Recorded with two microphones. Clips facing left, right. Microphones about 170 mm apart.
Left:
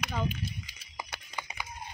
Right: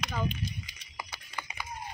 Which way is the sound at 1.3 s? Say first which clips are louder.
Right 1 dB; 15° left (ahead or behind).